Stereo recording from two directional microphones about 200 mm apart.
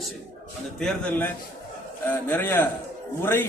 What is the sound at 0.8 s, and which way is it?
A man's voice, 5° left (ahead or behind).